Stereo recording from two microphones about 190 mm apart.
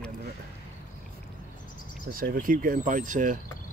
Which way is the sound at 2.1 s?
50° right (ahead or behind).